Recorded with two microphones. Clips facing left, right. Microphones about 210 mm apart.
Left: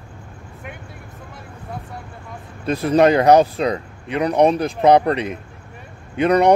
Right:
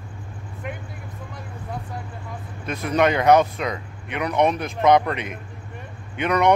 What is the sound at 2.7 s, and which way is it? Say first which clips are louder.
Speech: left 6 dB; 35° left (ahead or behind).